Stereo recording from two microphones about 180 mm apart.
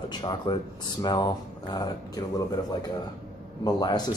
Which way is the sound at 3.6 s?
25° left (ahead or behind).